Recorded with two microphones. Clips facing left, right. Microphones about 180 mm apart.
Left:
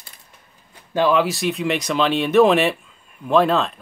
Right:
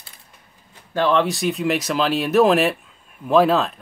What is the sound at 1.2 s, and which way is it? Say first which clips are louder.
Speech: even; centre (ahead or behind).